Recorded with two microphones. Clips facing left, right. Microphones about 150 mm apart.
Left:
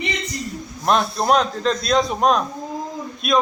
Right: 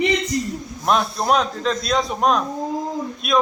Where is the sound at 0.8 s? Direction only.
Centre (ahead or behind).